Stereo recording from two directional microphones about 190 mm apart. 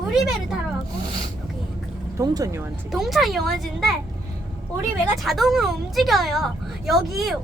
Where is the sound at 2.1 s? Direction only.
20° right (ahead or behind).